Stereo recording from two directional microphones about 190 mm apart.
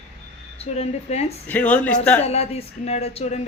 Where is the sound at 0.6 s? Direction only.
35° left (ahead or behind).